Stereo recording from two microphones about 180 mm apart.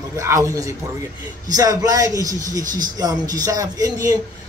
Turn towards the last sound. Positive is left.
turn(degrees=-20)  # may be behind; listen again after turning